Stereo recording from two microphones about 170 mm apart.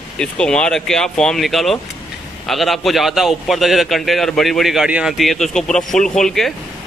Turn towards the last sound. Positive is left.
turn(degrees=5)  # may be behind; listen again after turning